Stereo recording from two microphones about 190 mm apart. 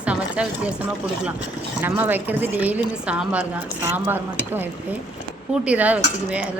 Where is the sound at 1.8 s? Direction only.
10° right (ahead or behind).